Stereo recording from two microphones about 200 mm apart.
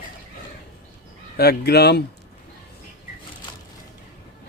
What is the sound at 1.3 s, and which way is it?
Speech, 50° left (ahead or behind).